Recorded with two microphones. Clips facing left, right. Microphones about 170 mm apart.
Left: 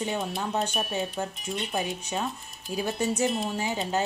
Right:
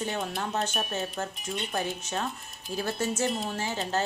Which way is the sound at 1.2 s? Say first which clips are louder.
Left 2 dB; 15° left (ahead or behind).